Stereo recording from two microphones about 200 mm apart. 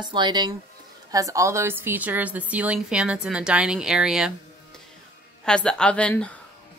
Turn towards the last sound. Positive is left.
turn(degrees=5)  # may be behind; listen again after turning